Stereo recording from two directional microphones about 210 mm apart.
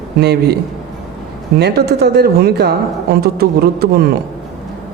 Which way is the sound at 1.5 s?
50° right (ahead or behind).